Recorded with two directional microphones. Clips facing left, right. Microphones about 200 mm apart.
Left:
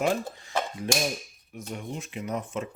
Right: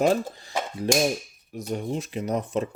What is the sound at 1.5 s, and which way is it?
Speech, 35° right (ahead or behind).